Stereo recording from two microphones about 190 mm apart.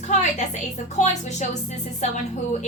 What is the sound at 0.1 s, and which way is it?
A woman's voice, 35° left (ahead or behind).